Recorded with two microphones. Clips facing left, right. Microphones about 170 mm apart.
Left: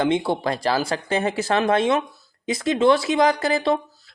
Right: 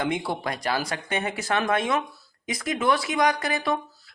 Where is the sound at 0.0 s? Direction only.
25° left (ahead or behind).